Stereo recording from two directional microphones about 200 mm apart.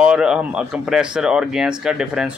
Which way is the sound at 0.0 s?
5° right (ahead or behind).